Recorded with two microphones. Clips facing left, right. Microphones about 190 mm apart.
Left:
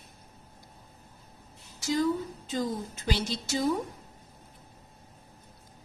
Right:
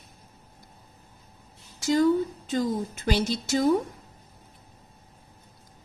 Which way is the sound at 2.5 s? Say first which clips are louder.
Right 5 dB; 55° right (ahead or behind).